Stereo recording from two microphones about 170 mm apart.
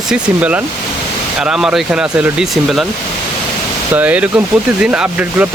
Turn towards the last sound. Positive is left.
turn(degrees=-5)  # may be behind; listen again after turning